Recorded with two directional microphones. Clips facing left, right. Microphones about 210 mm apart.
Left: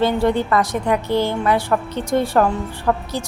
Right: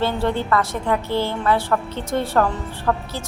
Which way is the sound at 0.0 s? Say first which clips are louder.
Left 4 dB; 15° left (ahead or behind).